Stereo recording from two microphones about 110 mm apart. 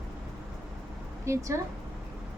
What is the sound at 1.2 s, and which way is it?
Speech, 25° right (ahead or behind).